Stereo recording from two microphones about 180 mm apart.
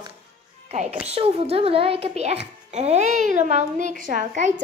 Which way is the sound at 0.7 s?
35° right (ahead or behind).